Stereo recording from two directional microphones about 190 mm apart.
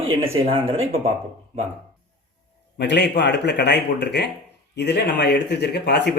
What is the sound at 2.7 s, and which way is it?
A man's voice, 65° left (ahead or behind).